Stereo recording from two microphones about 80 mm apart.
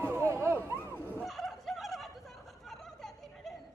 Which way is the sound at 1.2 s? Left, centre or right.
Centre.